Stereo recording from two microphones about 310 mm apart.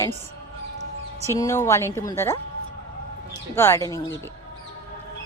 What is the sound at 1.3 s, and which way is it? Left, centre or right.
Speech, centre.